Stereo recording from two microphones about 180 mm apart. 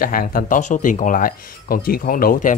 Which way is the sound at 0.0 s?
50° left (ahead or behind).